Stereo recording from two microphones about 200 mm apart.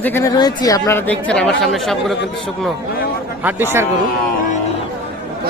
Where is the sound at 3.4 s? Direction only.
10° right (ahead or behind).